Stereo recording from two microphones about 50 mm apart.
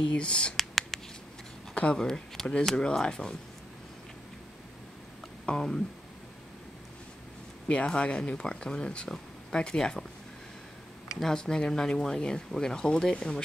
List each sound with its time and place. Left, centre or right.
0.1 s speech: left
0.6 s a sound: centre
2.0 s speech: centre
5.4 s speech: centre
7.6 s speech: left
11.1 s speech: centre